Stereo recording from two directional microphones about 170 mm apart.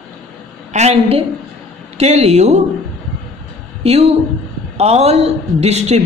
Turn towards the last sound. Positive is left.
turn(degrees=-40)  # may be behind; listen again after turning